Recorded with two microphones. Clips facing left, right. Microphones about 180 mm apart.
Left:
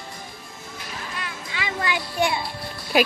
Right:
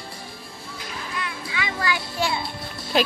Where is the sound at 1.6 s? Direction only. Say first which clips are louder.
Even; 25° left (ahead or behind).